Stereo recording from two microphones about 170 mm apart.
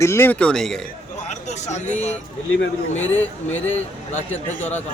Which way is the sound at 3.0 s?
10° left (ahead or behind).